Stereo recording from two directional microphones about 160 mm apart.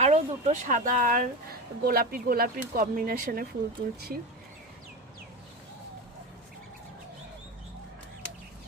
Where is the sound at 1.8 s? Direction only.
70° right (ahead or behind).